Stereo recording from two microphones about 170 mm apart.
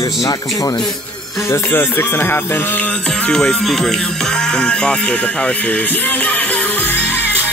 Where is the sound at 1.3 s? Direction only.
15° left (ahead or behind).